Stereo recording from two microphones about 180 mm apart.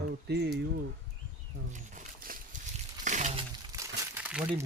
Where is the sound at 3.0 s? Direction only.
40° right (ahead or behind).